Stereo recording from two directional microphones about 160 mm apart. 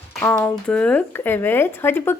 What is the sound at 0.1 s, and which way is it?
A woman's voice, 10° left (ahead or behind).